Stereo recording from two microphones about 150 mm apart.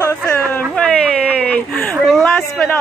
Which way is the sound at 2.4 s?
10° left (ahead or behind).